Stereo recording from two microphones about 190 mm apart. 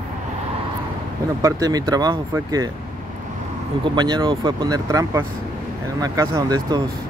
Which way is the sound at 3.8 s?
20° right (ahead or behind).